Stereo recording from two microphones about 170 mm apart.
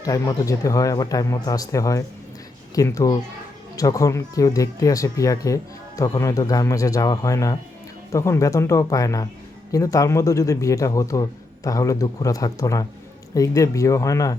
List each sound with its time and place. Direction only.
0.0 s speech: 20° left (ahead or behind)